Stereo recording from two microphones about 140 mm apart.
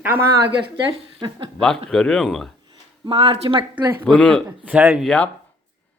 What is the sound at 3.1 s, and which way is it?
Speech, 40° right (ahead or behind).